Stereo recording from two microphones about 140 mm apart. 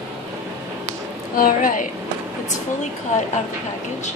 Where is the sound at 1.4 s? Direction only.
75° left (ahead or behind).